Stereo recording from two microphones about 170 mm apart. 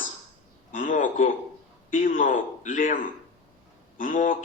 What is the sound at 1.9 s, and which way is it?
A man's voice, 50° left (ahead or behind).